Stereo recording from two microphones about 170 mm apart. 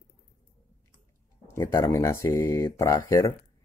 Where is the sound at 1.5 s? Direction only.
15° left (ahead or behind).